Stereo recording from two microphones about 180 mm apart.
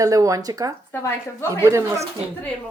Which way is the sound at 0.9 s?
15° left (ahead or behind).